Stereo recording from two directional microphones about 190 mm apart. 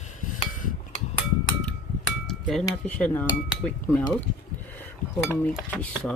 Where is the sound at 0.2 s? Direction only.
45° left (ahead or behind).